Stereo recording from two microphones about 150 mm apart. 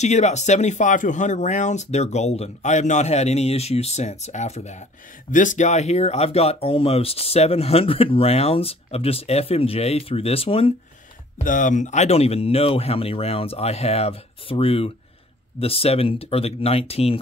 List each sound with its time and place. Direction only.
0.0 s speech: 50° left (ahead or behind)
5.3 s speech: 60° left (ahead or behind); by 10.7 s 40° left (ahead or behind)
11.3 s speech: 60° left (ahead or behind); by 17.2 s 40° left (ahead or behind)